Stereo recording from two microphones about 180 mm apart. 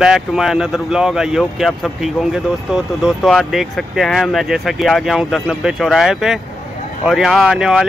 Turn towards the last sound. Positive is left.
turn(degrees=-5)  # may be behind; listen again after turning